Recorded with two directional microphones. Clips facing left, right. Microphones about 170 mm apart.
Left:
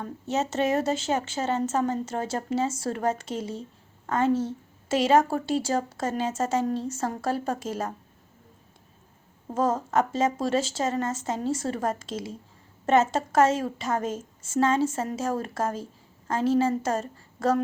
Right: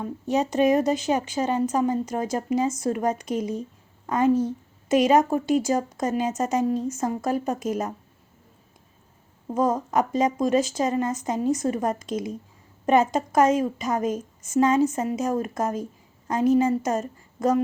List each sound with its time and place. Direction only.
0.0 s a woman's voice: 15° right (ahead or behind)
3.5 s a sound: 15° right (ahead or behind)
5.0 s a woman's voice: 15° right (ahead or behind)
9.6 s a woman's voice: 15° right (ahead or behind)